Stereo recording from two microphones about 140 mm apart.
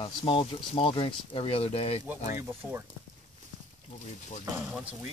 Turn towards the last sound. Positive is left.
turn(degrees=-5)  # may be behind; listen again after turning